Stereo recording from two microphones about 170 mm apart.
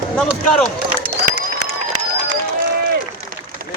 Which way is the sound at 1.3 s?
60° right (ahead or behind).